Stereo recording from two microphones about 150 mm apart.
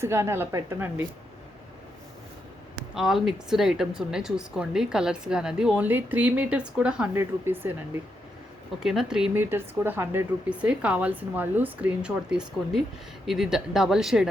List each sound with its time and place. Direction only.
0.0 s speech: 15° right (ahead or behind)
2.9 s a woman's voice: 5° right (ahead or behind)
8.8 s a woman's voice: 5° right (ahead or behind)